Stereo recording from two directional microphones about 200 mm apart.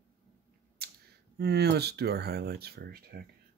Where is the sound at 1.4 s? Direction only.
55° right (ahead or behind).